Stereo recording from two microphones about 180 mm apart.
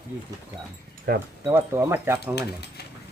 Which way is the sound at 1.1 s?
55° right (ahead or behind).